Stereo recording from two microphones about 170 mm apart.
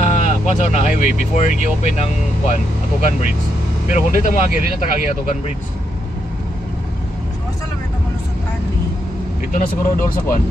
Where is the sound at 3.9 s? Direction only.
50° left (ahead or behind).